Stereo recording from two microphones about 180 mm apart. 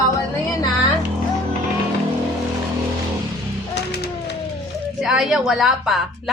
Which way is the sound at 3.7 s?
70° left (ahead or behind).